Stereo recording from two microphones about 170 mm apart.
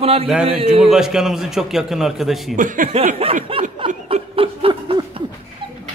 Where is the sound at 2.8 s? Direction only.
50° right (ahead or behind).